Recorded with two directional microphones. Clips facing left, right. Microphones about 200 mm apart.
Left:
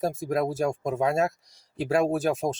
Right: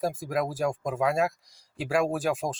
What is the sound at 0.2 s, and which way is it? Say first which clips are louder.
Speech: left 2 dB; 25° left (ahead or behind).